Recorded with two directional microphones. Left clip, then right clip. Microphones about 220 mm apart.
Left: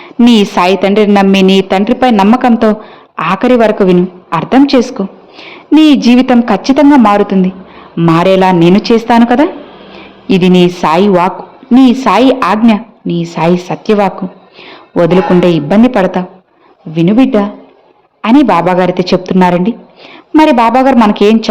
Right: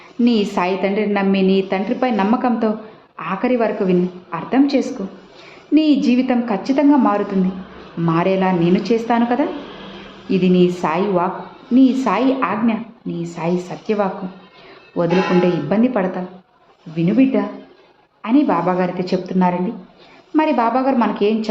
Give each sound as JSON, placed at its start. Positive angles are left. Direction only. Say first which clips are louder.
{"t": 0.3, "sound": "a woman's voice", "louder": "left 10 dB", "side_deg": 40}
{"t": 15.4, "sound": "a woman's voice", "louder": "left 9 dB", "side_deg": 40}